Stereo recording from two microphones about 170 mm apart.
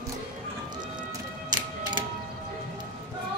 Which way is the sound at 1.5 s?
25° right (ahead or behind).